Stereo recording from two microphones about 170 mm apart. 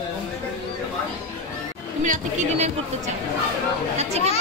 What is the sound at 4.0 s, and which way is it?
Speech, 40° right (ahead or behind).